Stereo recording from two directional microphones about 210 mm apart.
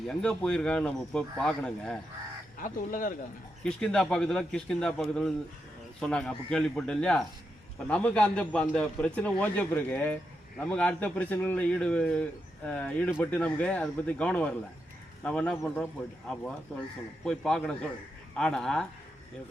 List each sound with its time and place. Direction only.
0.1 s speech: 5° left (ahead or behind)
2.6 s speech: 40° left (ahead or behind)
3.6 s a man's voice: 5° left (ahead or behind)